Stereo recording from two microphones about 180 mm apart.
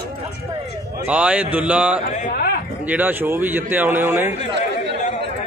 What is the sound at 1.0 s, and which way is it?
A man's voice, 10° right (ahead or behind).